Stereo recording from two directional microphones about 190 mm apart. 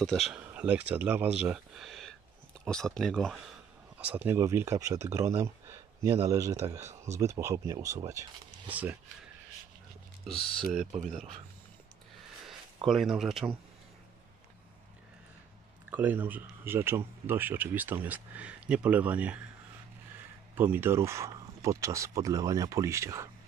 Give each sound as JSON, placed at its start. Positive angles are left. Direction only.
{"t": 0.0, "sound": "speech", "side_deg": 0}
{"t": 4.0, "sound": "speech", "side_deg": -10}
{"t": 10.2, "sound": "speech", "side_deg": 0}
{"t": 10.9, "sound": "speech", "side_deg": -40}
{"t": 12.8, "sound": "speech", "side_deg": 0}
{"t": 15.9, "sound": "speech", "side_deg": -10}
{"t": 20.5, "sound": "speech", "side_deg": -10}